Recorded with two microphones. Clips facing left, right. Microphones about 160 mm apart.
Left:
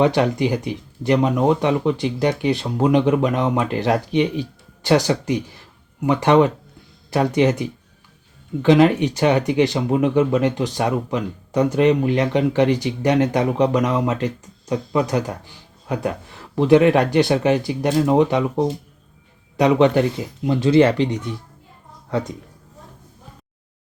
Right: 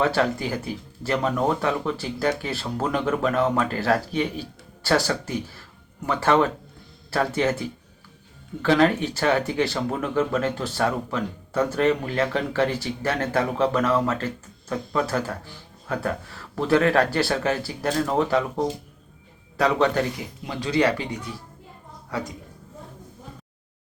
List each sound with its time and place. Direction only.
0.0 s speech: 20° left (ahead or behind)